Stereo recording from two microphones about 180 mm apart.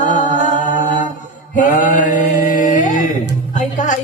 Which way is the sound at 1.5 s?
45° left (ahead or behind).